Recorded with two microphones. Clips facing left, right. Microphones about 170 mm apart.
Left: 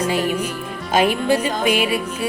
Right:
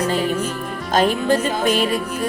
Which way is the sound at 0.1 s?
10° left (ahead or behind).